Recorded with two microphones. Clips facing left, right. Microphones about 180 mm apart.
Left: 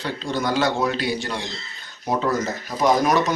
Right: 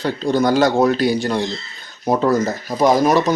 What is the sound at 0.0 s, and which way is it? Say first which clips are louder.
Speech: right 8 dB; 40° right (ahead or behind).